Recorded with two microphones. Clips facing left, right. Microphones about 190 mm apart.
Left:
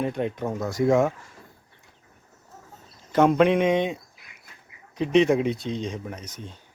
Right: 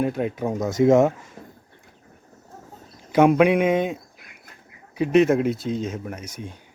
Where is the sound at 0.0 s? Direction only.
5° right (ahead or behind); by 1.3 s 20° right (ahead or behind).